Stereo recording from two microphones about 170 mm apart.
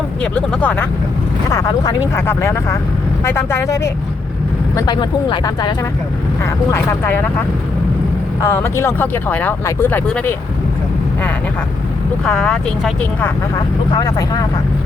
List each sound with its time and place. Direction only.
0.2 s speech: 5° left (ahead or behind)
1.5 s speech: 20° left (ahead or behind)
6.4 s speech: 15° left (ahead or behind)
12.2 s speech: 5° left (ahead or behind)
13.9 s speech: 20° left (ahead or behind)